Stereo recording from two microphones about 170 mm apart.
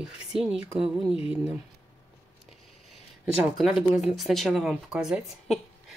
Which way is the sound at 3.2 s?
Centre (ahead or behind).